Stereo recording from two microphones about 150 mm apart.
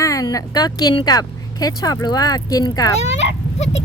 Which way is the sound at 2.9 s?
45° left (ahead or behind).